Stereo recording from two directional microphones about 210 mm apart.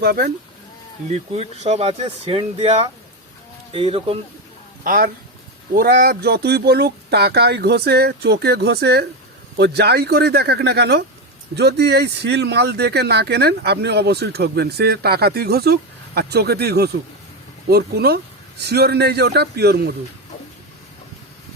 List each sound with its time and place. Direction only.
0.0 s speech: 45° right (ahead or behind)
1.1 s speech: 30° right (ahead or behind)
4.8 s speech: 40° right (ahead or behind)